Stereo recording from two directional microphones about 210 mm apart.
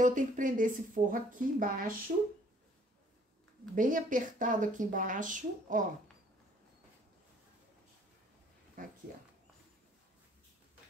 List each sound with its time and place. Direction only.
0.0 s a woman's voice: 40° right (ahead or behind)
3.7 s a woman's voice: 40° right (ahead or behind)
8.8 s speech: 40° right (ahead or behind)